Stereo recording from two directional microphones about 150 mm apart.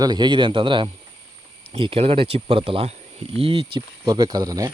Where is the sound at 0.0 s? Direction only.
30° right (ahead or behind).